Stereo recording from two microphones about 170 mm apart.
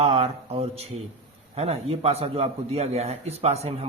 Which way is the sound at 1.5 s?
35° right (ahead or behind).